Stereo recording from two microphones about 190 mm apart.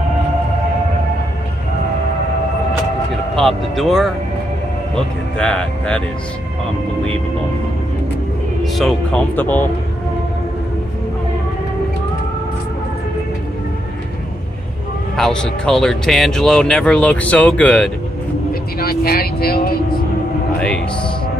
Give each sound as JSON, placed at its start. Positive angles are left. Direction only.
{"t": 3.3, "sound": "speech", "side_deg": 0}
{"t": 8.7, "sound": "speech", "side_deg": 5}
{"t": 15.1, "sound": "speech", "side_deg": 5}
{"t": 18.5, "sound": "speech", "side_deg": 55}